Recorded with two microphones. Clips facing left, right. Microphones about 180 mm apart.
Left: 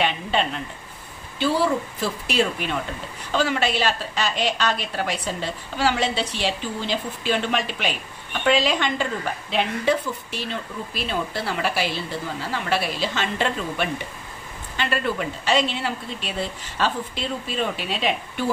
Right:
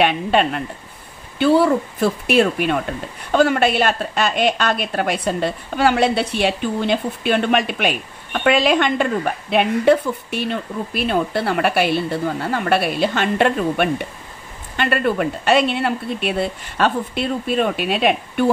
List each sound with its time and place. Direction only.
0.0 s a woman's voice: 60° right (ahead or behind)